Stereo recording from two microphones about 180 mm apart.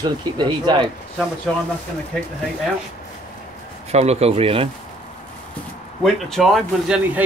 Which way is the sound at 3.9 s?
35° right (ahead or behind).